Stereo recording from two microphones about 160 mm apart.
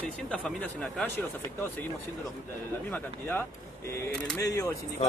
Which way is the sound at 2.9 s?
10° left (ahead or behind).